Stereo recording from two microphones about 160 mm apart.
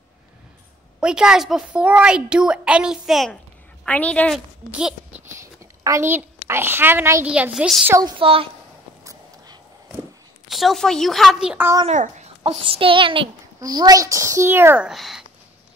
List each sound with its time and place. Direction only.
1.0 s a child's voice: 5° right (ahead or behind)
4.7 s a child's voice: 5° right (ahead or behind)
5.3 s a woman's voice: 20° right (ahead or behind); by 7.9 s 5° right (ahead or behind)
8.2 s a child's voice: 35° right (ahead or behind)
10.5 s a child's voice: centre (ahead or behind)
11.8 s a child's voice: 45° right (ahead or behind); by 14.9 s 15° right (ahead or behind)
14.9 s a child's voice: centre (ahead or behind)